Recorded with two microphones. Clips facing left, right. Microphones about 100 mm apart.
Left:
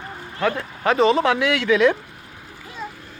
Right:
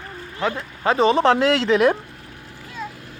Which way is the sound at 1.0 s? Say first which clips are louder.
Right 2 dB; 35° right (ahead or behind).